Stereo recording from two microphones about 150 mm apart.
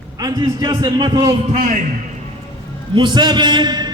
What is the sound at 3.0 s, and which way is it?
Speech, 30° right (ahead or behind).